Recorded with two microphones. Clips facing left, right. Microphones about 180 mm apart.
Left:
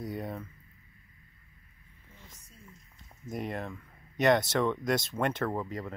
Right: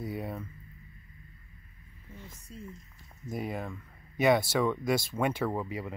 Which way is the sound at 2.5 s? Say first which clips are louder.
Right 15 dB; 90° right.